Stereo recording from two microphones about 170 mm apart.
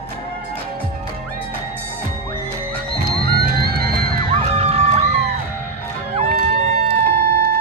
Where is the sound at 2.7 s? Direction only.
65° right (ahead or behind).